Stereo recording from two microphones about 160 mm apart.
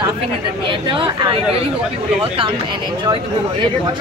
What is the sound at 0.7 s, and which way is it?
Speech, 30° right (ahead or behind).